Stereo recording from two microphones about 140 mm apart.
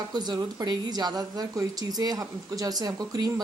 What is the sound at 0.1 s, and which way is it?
A woman's voice, 30° right (ahead or behind).